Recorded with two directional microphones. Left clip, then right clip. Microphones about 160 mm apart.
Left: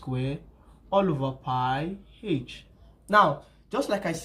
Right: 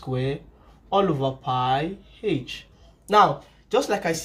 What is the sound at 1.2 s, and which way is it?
Speech, 20° right (ahead or behind).